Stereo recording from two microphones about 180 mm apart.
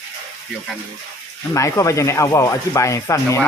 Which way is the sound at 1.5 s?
15° left (ahead or behind).